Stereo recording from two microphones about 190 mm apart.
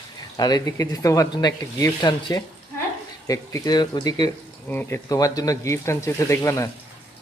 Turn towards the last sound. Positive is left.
turn(degrees=15)  # may be behind; listen again after turning